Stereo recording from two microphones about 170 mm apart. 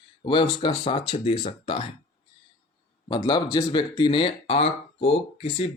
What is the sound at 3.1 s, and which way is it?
Speech, 25° left (ahead or behind).